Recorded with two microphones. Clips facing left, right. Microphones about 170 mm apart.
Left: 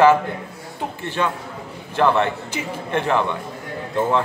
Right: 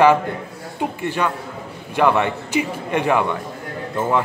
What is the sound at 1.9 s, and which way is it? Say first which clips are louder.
A man's voice: right 1 dB; 15° right (ahead or behind).